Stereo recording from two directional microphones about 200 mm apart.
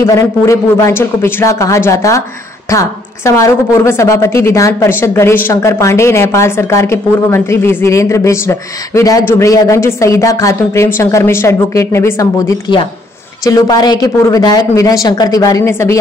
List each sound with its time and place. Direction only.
0.0 s a woman's voice: 15° left (ahead or behind)